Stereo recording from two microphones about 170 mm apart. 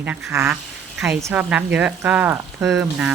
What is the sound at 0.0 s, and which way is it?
Speech, 10° right (ahead or behind).